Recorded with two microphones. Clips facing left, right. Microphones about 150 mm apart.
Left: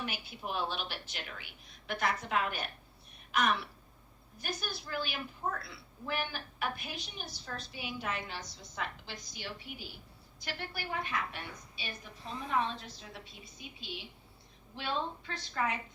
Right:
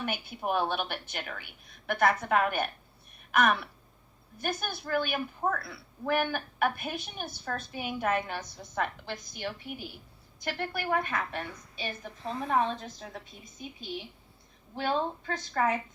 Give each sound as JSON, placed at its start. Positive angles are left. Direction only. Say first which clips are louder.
{"t": 0.0, "sound": "a woman's voice", "louder": "right 7 dB", "side_deg": -55}
{"t": 14.8, "sound": "a woman's voice", "louder": "right 6 dB", "side_deg": -45}